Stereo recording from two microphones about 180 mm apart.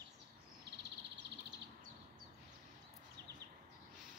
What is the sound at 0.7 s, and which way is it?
Bird, 70° right (ahead or behind).